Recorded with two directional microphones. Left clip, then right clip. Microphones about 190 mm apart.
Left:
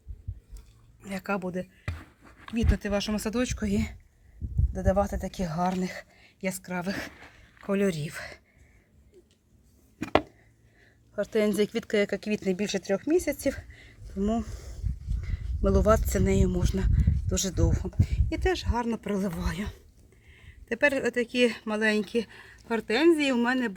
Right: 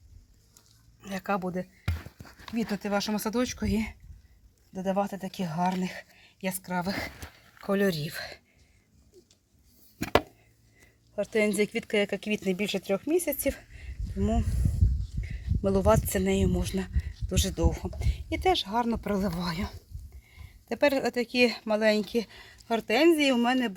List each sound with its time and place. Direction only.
1.0 s speech: 25° right (ahead or behind); by 3.9 s 10° right (ahead or behind)
4.7 s speech: 10° left (ahead or behind)
6.4 s speech: 15° right (ahead or behind)
11.1 s speech: centre (ahead or behind); by 23.7 s 30° right (ahead or behind)